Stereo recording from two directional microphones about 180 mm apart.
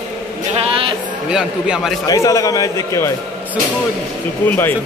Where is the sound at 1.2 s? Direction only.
5° right (ahead or behind).